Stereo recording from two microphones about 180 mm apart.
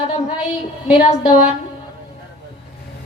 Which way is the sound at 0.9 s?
25° left (ahead or behind).